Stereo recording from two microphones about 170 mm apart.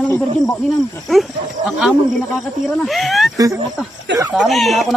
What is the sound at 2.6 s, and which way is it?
Speech, centre (ahead or behind).